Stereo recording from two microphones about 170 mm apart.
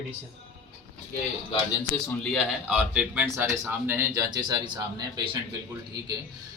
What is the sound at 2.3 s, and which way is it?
Speech, 5° right (ahead or behind).